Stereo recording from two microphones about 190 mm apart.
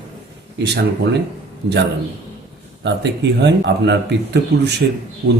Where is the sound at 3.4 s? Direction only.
65° right (ahead or behind).